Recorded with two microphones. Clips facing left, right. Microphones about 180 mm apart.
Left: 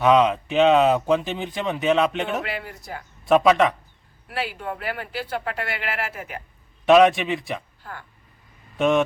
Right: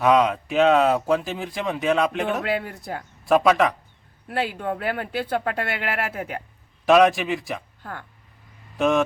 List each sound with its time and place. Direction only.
0.0 s speech: centre (ahead or behind)
2.6 s speech: 55° right (ahead or behind)
3.2 s speech: centre (ahead or behind)
4.3 s speech: 50° right (ahead or behind)
6.8 s speech: centre (ahead or behind)
8.8 s speech: centre (ahead or behind)